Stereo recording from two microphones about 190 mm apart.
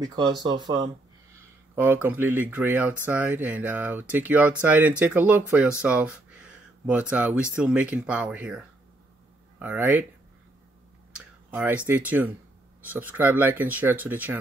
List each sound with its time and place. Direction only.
0.0 s speech: 20° right (ahead or behind)
1.8 s speech: 10° right (ahead or behind)
9.6 s speech: 10° right (ahead or behind)
11.1 s speech: 5° right (ahead or behind)